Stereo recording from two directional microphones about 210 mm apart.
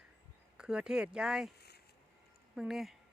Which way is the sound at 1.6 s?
50° left (ahead or behind).